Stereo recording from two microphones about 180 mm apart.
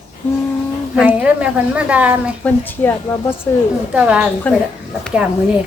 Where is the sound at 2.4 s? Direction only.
10° left (ahead or behind).